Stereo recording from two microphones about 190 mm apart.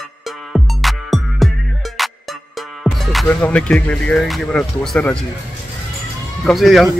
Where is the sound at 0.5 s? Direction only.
Centre (ahead or behind).